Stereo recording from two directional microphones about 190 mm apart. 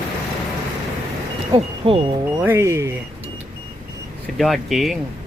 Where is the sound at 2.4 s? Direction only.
15° right (ahead or behind).